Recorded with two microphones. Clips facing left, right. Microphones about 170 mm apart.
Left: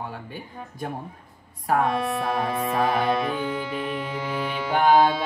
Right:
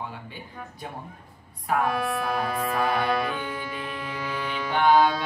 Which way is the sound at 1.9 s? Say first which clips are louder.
Left 2 dB; 25° left (ahead or behind).